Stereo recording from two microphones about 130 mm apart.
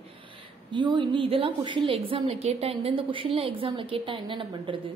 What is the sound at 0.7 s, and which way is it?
A woman's voice, 35° right (ahead or behind).